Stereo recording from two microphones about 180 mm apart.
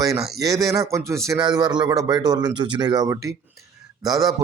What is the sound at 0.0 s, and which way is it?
A man's voice, 20° right (ahead or behind).